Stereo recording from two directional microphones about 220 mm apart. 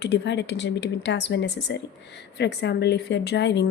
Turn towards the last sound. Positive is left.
turn(degrees=50)  # may be behind; listen again after turning